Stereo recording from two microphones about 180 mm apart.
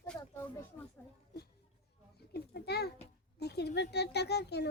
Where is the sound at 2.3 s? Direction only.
65° left (ahead or behind).